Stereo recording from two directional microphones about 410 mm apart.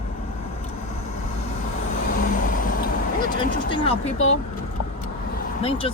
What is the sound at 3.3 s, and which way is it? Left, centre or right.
Vehicle, centre.